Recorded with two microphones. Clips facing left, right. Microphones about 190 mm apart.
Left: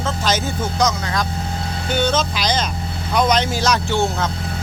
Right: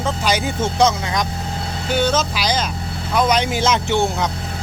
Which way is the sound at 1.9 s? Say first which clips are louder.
Right 1 dB; 5° right (ahead or behind).